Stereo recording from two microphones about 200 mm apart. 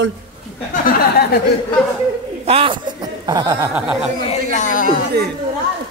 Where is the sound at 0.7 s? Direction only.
45° left (ahead or behind).